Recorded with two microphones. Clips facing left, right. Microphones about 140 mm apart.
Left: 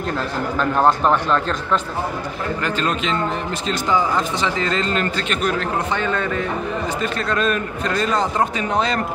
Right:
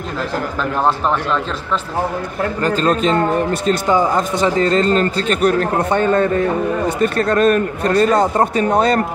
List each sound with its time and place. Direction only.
0.8 s speech: centre (ahead or behind)
2.6 s a man's voice: 40° right (ahead or behind)